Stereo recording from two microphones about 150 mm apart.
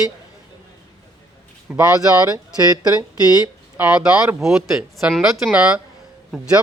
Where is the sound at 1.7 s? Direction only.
10° right (ahead or behind).